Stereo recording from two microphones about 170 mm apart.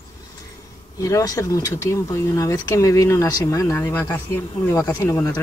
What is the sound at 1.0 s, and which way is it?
Speech, 20° left (ahead or behind).